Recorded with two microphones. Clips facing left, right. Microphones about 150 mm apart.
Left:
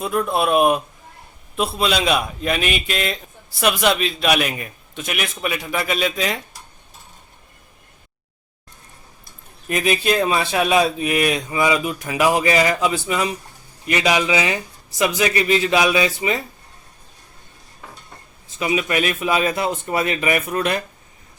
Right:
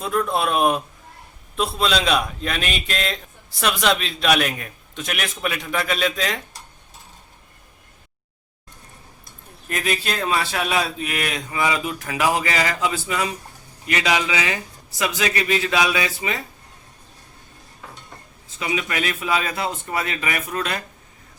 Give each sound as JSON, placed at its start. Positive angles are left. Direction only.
{"t": 0.0, "sound": "a man's voice", "side_deg": 10}
{"t": 9.6, "sound": "a man's voice", "side_deg": 15}
{"t": 18.6, "sound": "a man's voice", "side_deg": 20}